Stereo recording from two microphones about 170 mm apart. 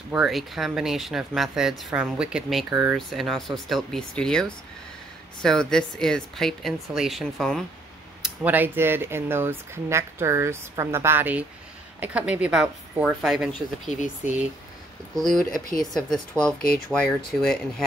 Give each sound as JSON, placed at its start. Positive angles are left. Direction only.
{"t": 0.1, "sound": "speech", "side_deg": 0}
{"t": 8.2, "sound": "speech", "side_deg": -10}
{"t": 16.5, "sound": "speech", "side_deg": 60}
{"t": 17.3, "sound": "speech", "side_deg": 5}